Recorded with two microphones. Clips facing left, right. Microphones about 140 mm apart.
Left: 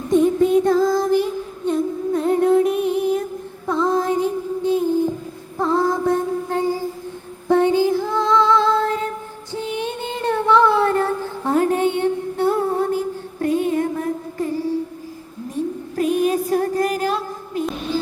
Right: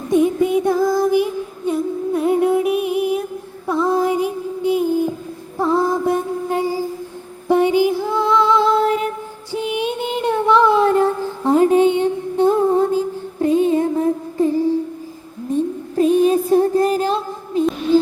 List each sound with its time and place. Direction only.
0.1 s female singing: 10° right (ahead or behind)
3.7 s child singing: 10° right (ahead or behind)
5.5 s female singing: 15° right (ahead or behind)
16.0 s music: 25° right (ahead or behind)